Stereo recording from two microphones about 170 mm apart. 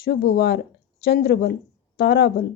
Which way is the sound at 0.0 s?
70° left (ahead or behind).